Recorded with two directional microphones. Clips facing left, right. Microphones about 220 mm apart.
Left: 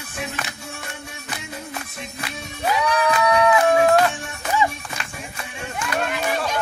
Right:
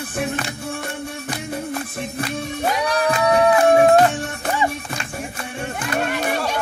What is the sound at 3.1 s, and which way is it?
Music, 30° right (ahead or behind).